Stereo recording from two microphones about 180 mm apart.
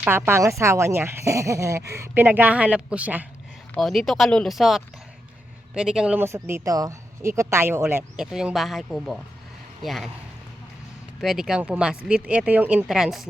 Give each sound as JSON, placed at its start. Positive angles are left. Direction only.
{"t": 0.0, "sound": "speech", "side_deg": -10}
{"t": 11.2, "sound": "speech", "side_deg": 0}